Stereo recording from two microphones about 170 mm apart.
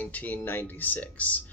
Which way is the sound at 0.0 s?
10° left (ahead or behind).